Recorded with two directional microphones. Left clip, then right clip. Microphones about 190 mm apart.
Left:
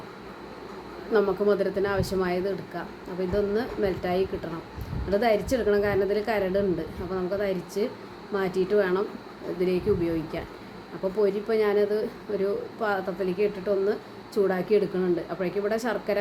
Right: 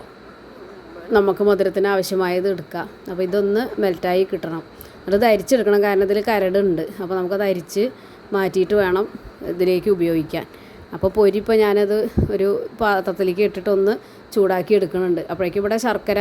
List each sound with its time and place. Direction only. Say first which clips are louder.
1.1 s speech: right 7 dB; 50° right (ahead or behind)